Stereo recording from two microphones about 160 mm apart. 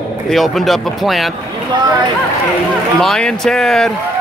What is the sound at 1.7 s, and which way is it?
Speech, 30° right (ahead or behind).